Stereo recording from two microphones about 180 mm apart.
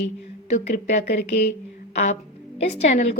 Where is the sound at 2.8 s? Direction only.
40° left (ahead or behind).